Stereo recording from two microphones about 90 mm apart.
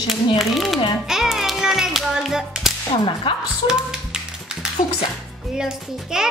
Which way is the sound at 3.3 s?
65° left (ahead or behind).